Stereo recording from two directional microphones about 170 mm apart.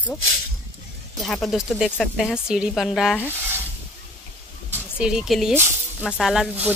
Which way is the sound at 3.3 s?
10° right (ahead or behind).